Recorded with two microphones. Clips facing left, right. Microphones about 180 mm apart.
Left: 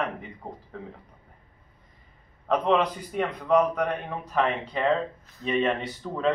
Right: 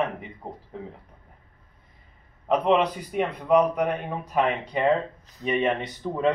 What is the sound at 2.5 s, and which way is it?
Speech, 10° right (ahead or behind).